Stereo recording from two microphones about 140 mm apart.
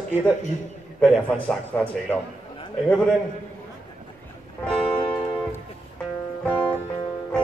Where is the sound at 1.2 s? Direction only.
10° left (ahead or behind).